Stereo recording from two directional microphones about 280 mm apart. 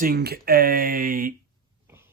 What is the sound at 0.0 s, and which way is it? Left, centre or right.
Speech, right.